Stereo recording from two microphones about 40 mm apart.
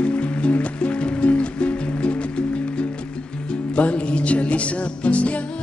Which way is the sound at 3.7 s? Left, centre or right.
Left.